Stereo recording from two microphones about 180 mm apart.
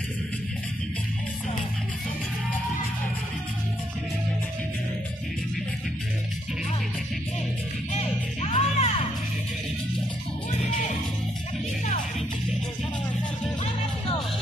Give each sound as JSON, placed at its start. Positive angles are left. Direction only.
{"t": 7.9, "sound": "music", "side_deg": 35}